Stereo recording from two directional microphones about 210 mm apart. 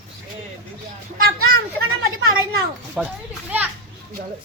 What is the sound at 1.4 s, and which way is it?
Speech, 90° right.